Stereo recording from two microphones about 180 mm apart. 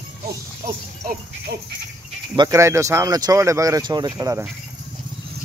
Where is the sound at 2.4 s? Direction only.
15° right (ahead or behind).